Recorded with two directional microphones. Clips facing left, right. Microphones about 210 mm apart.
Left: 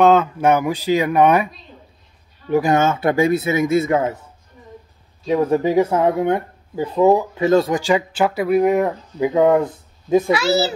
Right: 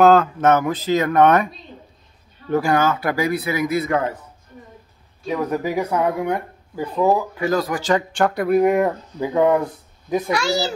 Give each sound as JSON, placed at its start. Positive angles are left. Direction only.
{"t": 0.0, "sound": "speech", "side_deg": 0}
{"t": 0.4, "sound": "speech", "side_deg": 10}
{"t": 2.5, "sound": "speech", "side_deg": 20}
{"t": 5.2, "sound": "speech", "side_deg": 30}
{"t": 7.8, "sound": "speech", "side_deg": 10}
{"t": 9.2, "sound": "speech", "side_deg": 20}
{"t": 10.3, "sound": "speech", "side_deg": 5}